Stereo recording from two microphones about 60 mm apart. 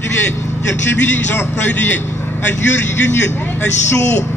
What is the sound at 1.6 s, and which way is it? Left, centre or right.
A man's voice, left.